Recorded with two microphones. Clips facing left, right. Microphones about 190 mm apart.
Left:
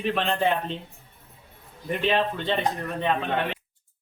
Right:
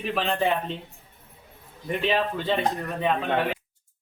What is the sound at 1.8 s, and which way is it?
Speech, centre (ahead or behind).